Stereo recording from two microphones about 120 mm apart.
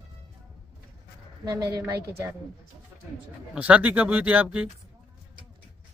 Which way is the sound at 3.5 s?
10° right (ahead or behind).